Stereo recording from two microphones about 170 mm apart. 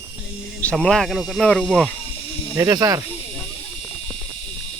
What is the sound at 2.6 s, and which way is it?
Speech, 20° right (ahead or behind).